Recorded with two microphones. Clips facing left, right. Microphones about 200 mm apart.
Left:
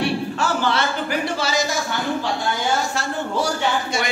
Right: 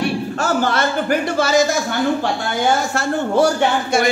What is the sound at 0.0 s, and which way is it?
Speech, 45° right (ahead or behind).